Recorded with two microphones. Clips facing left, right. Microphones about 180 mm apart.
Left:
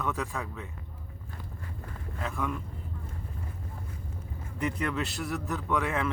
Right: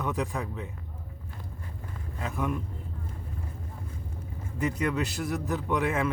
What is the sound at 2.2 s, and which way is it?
Speech, 15° right (ahead or behind).